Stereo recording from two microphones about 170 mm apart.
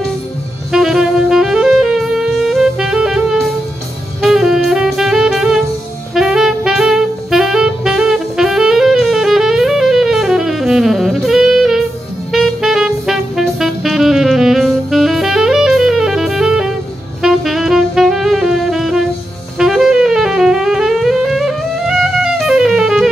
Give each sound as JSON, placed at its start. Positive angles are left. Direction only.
{"t": 0.7, "sound": "saxophone", "side_deg": 0}
{"t": 12.3, "sound": "music", "side_deg": 0}
{"t": 17.2, "sound": "saxophone", "side_deg": 0}
{"t": 19.6, "sound": "music", "side_deg": 0}